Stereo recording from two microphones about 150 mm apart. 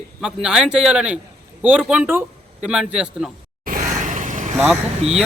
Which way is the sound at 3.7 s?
60° right (ahead or behind).